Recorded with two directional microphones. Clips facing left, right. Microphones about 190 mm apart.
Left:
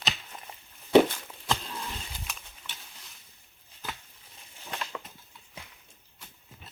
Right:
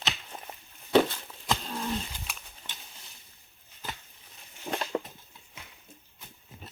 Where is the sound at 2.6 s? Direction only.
30° right (ahead or behind).